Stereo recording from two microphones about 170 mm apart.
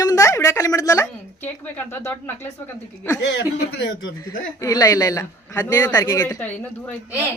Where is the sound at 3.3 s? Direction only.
90° left.